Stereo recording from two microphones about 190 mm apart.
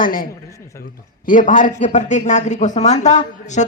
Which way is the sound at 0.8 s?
45° left (ahead or behind).